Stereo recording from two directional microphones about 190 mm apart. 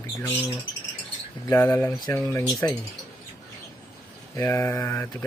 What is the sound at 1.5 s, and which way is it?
Speech, 15° left (ahead or behind).